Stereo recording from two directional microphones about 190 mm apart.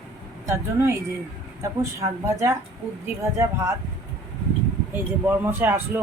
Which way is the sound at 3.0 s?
15° right (ahead or behind).